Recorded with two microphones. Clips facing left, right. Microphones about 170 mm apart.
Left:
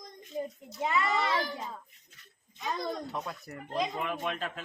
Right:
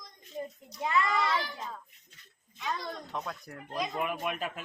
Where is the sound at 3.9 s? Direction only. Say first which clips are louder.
Right 1 dB; 10° right (ahead or behind).